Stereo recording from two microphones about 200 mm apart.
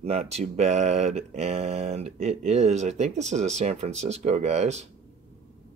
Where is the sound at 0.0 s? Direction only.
30° right (ahead or behind).